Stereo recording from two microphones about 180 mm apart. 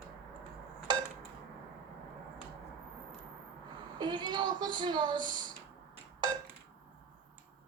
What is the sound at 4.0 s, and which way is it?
A woman's voice, 25° right (ahead or behind).